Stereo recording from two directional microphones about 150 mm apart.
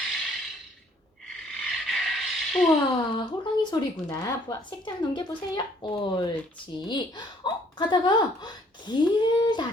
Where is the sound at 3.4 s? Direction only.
30° left (ahead or behind).